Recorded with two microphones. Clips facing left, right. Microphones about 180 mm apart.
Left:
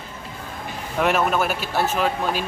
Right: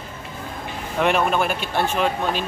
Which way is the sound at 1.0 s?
5° left (ahead or behind).